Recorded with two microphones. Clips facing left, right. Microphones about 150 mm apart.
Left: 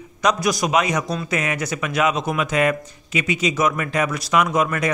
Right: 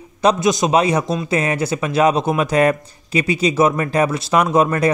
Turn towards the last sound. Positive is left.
turn(degrees=-30)  # may be behind; listen again after turning